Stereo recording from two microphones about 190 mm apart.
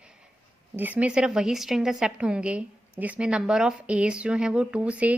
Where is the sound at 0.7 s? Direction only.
10° right (ahead or behind).